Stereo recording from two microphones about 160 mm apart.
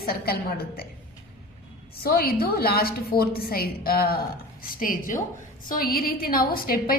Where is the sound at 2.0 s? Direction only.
75° left (ahead or behind).